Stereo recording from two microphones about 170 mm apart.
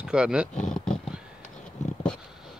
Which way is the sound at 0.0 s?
5° right (ahead or behind).